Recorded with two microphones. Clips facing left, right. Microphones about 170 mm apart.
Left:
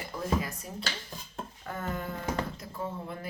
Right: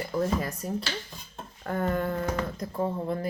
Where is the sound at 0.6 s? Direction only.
45° right (ahead or behind).